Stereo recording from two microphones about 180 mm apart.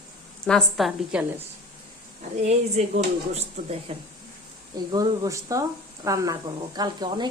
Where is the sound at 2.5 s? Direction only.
35° right (ahead or behind).